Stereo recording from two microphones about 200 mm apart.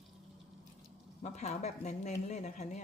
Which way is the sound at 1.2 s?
35° left (ahead or behind).